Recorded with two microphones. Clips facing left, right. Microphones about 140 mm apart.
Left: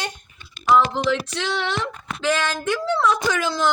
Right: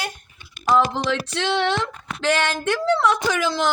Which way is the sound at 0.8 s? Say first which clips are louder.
Left 1 dB; 40° right (ahead or behind).